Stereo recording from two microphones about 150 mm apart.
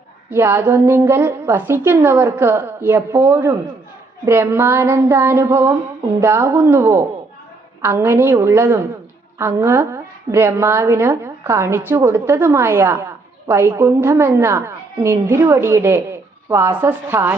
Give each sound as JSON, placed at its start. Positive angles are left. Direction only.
{"t": 0.3, "sound": "a woman's voice", "side_deg": -15}